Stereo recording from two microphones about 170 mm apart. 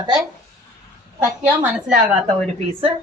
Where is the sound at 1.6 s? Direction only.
10° right (ahead or behind).